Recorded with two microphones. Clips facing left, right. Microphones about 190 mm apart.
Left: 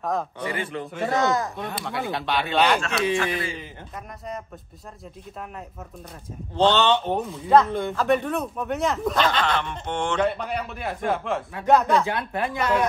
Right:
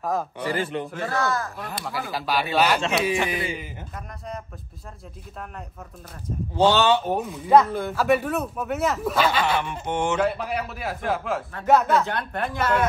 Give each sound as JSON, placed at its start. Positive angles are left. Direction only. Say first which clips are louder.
{"t": 0.0, "sound": "speech", "louder": "right 1 dB", "side_deg": -5}
{"t": 0.6, "sound": "a man's voice", "louder": "right 5 dB", "side_deg": -25}
{"t": 1.0, "sound": "speech", "louder": "left 5 dB", "side_deg": 20}
{"t": 1.7, "sound": "speech", "louder": "left 2 dB", "side_deg": 0}
{"t": 6.5, "sound": "speech", "louder": "right 1 dB", "side_deg": -10}